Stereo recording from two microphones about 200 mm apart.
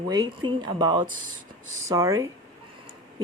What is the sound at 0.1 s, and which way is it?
Speech, 20° right (ahead or behind).